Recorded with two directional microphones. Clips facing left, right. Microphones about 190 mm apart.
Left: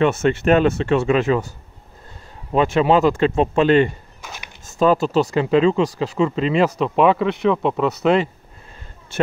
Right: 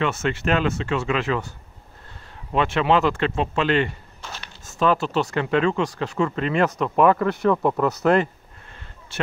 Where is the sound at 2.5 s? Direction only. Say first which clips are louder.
Left 4 dB; 35° left (ahead or behind).